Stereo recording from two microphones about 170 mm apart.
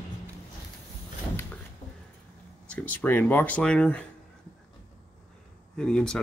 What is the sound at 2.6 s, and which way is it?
Speech, 10° left (ahead or behind).